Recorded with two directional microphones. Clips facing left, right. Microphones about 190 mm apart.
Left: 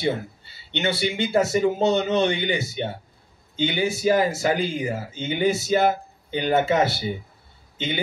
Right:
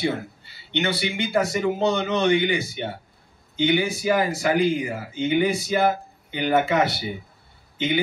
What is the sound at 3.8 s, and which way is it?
A man's voice, 25° left (ahead or behind).